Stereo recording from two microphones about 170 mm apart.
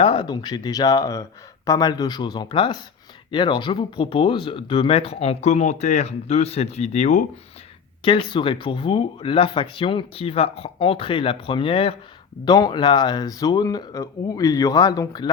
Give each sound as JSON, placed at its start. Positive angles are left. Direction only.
{"t": 0.0, "sound": "speech", "side_deg": 30}
{"t": 8.0, "sound": "speech", "side_deg": 30}